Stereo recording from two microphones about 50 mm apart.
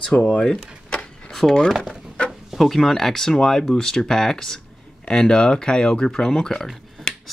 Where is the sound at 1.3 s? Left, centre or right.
Centre.